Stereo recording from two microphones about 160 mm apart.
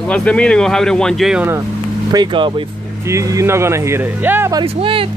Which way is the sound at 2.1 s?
30° right (ahead or behind).